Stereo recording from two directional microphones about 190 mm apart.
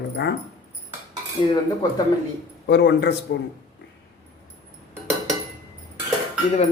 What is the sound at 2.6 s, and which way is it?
Speech, 65° left (ahead or behind).